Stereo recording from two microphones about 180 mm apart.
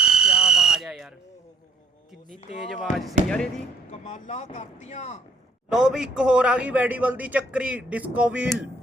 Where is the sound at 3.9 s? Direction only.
40° left (ahead or behind).